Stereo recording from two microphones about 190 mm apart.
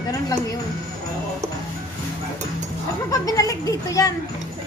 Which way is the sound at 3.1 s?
20° left (ahead or behind).